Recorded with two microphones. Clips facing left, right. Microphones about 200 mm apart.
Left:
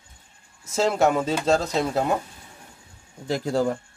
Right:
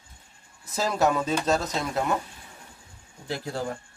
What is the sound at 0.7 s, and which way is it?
A man's voice, 25° left (ahead or behind).